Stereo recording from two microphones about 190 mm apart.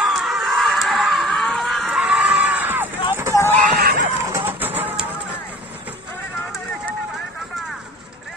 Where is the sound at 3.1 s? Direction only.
10° right (ahead or behind).